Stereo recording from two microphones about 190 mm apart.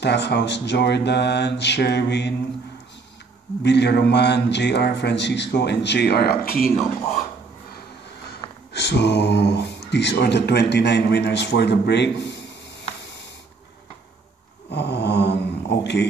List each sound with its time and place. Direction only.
0.0 s speech: 65° left (ahead or behind)
3.6 s speech: 65° left (ahead or behind)
8.7 s speech: 65° left (ahead or behind)
14.7 s a sound: 65° left (ahead or behind)